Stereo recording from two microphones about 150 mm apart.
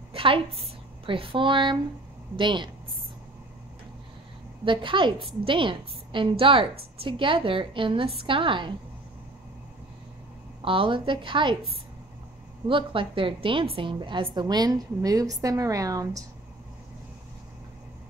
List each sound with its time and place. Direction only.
0.1 s a woman's voice: 35° right (ahead or behind)
4.6 s a woman's voice: 35° right (ahead or behind)
10.6 s a woman's voice: 35° right (ahead or behind)